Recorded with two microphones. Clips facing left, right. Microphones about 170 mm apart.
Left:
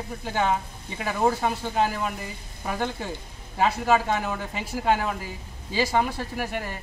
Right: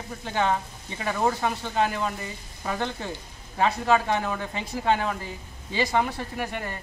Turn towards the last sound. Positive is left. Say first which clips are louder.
# left 1 dB
turn(degrees=5)  # may be behind; listen again after turning